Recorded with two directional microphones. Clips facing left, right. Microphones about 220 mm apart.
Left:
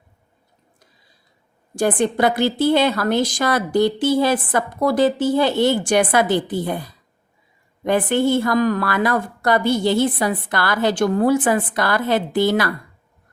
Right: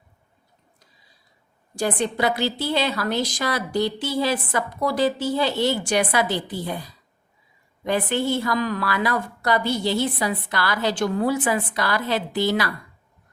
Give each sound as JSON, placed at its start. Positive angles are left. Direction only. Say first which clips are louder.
{"t": 1.7, "sound": "a woman's voice", "louder": "left 5 dB", "side_deg": 50}